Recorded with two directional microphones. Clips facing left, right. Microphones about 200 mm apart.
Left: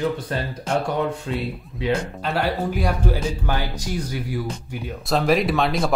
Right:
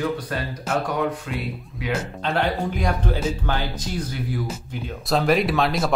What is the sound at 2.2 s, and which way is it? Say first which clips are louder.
Speech: right 1 dB; 5° left (ahead or behind).